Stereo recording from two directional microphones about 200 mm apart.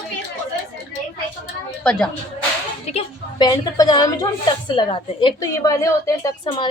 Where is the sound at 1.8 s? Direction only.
5° left (ahead or behind).